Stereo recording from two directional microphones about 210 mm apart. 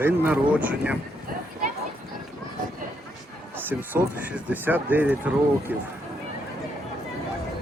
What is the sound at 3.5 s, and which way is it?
Speech, 10° right (ahead or behind).